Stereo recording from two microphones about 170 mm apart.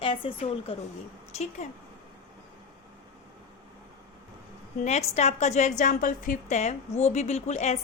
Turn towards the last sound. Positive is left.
turn(degrees=45)  # may be behind; listen again after turning